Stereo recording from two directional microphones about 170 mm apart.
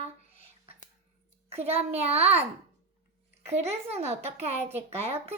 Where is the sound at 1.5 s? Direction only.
35° right (ahead or behind).